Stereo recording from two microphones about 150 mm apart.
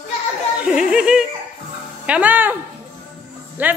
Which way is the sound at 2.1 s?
10° right (ahead or behind).